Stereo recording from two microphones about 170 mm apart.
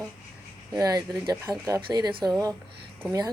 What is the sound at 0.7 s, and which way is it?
A woman's voice, 20° right (ahead or behind).